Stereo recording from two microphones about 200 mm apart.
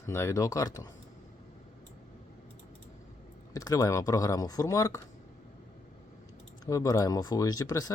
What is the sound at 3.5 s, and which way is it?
Speech, 20° left (ahead or behind).